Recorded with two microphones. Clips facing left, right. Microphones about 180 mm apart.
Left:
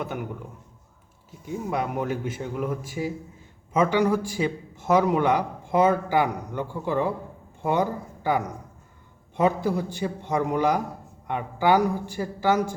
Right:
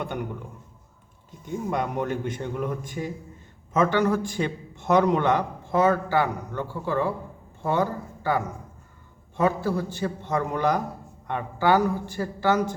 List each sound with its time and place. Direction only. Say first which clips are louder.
0.0 s a man's voice: even; 5° left (ahead or behind)
1.3 s a man's voice: even; 5° left (ahead or behind)